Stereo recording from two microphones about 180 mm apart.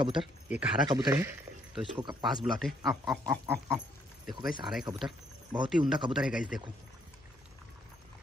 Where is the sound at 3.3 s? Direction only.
15° right (ahead or behind).